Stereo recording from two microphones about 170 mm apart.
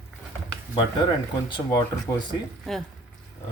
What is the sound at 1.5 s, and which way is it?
Speech, 25° left (ahead or behind).